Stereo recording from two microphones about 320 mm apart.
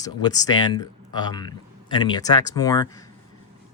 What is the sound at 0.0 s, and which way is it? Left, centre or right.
Speech, centre.